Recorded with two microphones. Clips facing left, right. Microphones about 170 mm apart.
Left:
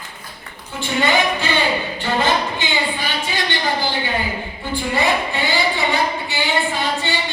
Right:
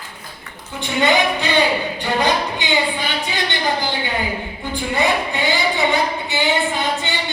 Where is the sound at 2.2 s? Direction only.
20° right (ahead or behind).